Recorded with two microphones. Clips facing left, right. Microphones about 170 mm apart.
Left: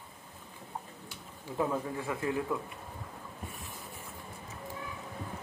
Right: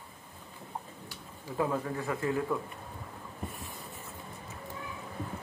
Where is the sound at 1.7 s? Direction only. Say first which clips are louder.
Right 1 dB; 15° left (ahead or behind).